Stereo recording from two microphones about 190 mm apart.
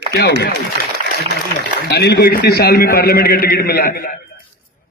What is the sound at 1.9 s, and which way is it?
A man's voice, 60° left (ahead or behind).